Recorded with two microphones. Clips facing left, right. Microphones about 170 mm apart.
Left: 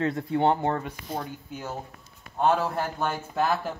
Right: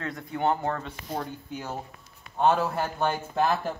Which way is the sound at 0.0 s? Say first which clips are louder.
Left 5 dB; 25° left (ahead or behind).